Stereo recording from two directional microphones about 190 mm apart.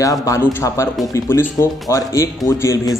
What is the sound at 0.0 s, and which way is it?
A man's voice, 15° left (ahead or behind).